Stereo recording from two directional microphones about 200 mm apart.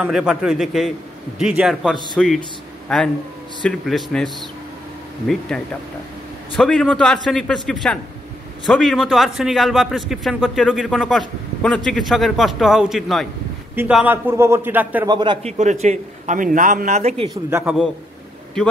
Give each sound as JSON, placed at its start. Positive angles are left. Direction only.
{"t": 0.0, "sound": "a man's voice", "side_deg": -5}
{"t": 3.6, "sound": "a man's voice", "side_deg": 0}
{"t": 5.3, "sound": "a man's voice", "side_deg": 5}
{"t": 15.0, "sound": "a man's voice", "side_deg": -20}
{"t": 15.5, "sound": "a man's voice", "side_deg": -35}
{"t": 17.3, "sound": "speech", "side_deg": -15}